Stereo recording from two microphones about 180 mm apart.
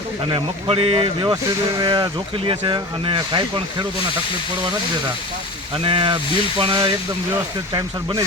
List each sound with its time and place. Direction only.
0.3 s speech: 30° right (ahead or behind)
5.8 s speech: 25° right (ahead or behind)